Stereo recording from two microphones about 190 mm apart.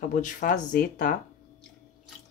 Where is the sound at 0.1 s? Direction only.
45° left (ahead or behind).